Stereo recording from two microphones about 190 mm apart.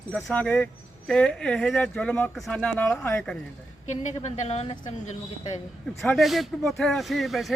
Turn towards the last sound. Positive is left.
turn(degrees=0)  # may be behind; listen again after turning